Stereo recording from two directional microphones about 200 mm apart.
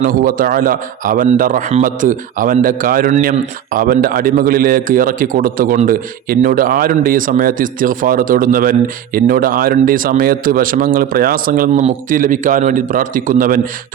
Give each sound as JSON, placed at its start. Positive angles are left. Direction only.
{"t": 0.2, "sound": "a man's voice", "side_deg": -45}